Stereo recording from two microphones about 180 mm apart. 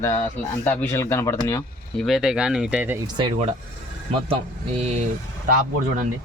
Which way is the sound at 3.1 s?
25° right (ahead or behind).